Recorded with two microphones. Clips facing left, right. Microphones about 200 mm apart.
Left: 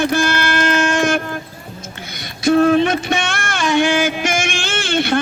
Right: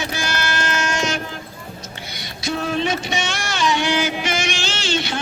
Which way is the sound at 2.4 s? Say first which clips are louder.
Left 10 dB; 55° left (ahead or behind).